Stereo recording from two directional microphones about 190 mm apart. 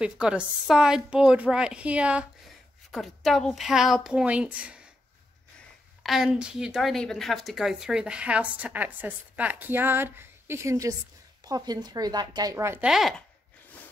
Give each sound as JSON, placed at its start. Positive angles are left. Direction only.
{"t": 0.0, "sound": "a woman's voice", "side_deg": -5}
{"t": 6.0, "sound": "a woman's voice", "side_deg": 0}